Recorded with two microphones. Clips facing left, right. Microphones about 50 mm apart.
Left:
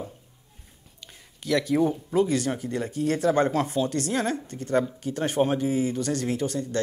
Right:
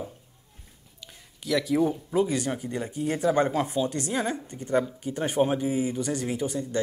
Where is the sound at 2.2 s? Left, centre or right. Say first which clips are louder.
Left 2 dB; centre.